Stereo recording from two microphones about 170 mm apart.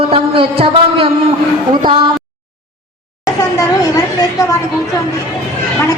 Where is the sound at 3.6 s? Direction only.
20° left (ahead or behind).